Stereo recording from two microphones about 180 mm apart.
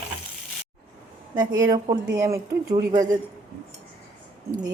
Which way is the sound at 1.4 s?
20° right (ahead or behind).